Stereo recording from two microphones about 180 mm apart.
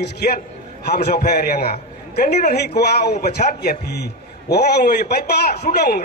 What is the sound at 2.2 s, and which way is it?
Speech, 45° left (ahead or behind).